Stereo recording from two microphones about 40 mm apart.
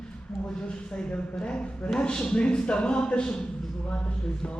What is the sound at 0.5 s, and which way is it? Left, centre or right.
Speech, left.